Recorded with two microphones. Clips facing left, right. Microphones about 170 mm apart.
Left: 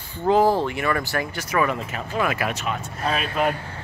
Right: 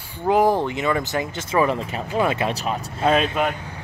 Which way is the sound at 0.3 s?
15° right (ahead or behind).